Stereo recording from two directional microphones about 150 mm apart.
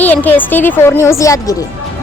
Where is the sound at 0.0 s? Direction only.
10° left (ahead or behind).